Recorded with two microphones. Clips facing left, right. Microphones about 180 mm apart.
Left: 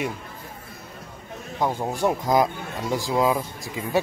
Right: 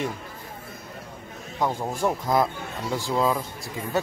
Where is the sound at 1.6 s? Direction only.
10° left (ahead or behind).